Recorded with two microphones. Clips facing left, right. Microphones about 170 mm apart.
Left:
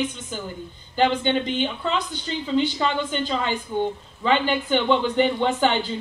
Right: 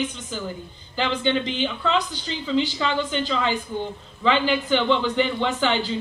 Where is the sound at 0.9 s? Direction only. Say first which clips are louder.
Left 3 dB; 50° left (ahead or behind).